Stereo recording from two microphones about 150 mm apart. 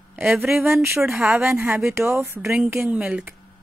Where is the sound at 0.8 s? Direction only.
15° right (ahead or behind).